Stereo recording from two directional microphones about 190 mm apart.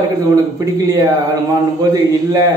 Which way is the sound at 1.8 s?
20° right (ahead or behind).